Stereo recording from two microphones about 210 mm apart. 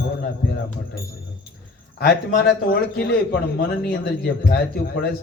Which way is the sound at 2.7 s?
50° left (ahead or behind).